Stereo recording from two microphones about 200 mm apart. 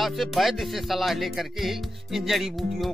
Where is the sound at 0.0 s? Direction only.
Centre (ahead or behind).